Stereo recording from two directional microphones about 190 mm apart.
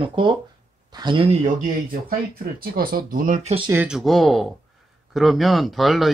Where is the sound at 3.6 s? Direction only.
5° right (ahead or behind).